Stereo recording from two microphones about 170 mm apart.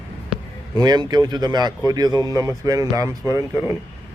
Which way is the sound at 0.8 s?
25° right (ahead or behind).